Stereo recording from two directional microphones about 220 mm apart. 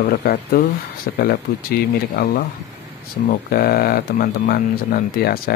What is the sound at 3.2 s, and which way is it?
Speech, 45° left (ahead or behind).